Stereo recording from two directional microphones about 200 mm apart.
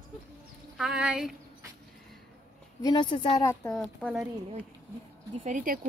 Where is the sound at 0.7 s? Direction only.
5° right (ahead or behind).